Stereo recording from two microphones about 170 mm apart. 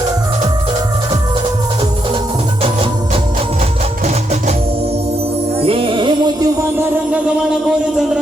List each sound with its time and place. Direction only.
4.0 s music: 40° right (ahead or behind)
5.5 s music: 35° right (ahead or behind)
6.7 s music: 10° right (ahead or behind)